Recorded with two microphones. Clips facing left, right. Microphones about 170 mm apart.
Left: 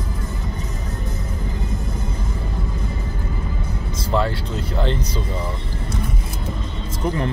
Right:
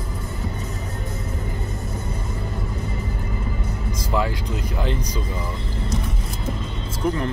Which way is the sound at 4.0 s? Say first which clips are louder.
Left 3 dB; 10° right (ahead or behind).